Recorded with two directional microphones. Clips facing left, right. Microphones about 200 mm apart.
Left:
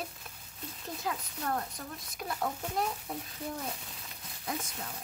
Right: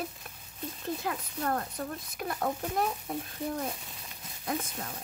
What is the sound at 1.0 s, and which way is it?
Speech, 55° right (ahead or behind).